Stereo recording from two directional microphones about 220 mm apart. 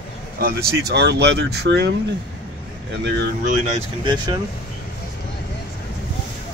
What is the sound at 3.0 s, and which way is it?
Speech, 40° right (ahead or behind).